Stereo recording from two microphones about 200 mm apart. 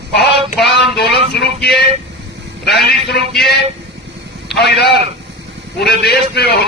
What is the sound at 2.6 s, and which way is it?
Speech, 55° left (ahead or behind).